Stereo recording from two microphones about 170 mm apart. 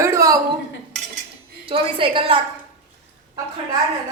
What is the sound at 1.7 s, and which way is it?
Speech, 30° right (ahead or behind).